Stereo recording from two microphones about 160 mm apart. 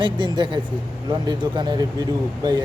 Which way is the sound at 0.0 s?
30° right (ahead or behind).